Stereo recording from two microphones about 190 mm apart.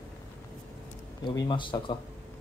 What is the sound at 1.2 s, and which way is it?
Speech, 25° left (ahead or behind).